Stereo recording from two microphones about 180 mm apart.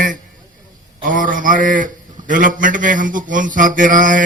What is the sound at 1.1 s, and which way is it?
Mantra, 45° right (ahead or behind).